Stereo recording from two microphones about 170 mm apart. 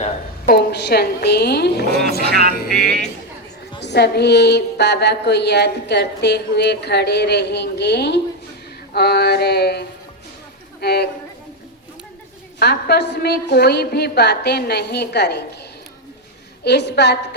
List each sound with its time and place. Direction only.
0.4 s a woman's voice: 70° left (ahead or behind)
2.6 s speech: 65° right (ahead or behind)
3.8 s a woman's voice: 85° left
8.9 s a woman's voice: 70° left (ahead or behind)
12.5 s a woman's voice: 75° left (ahead or behind)
16.6 s a woman's voice: 80° left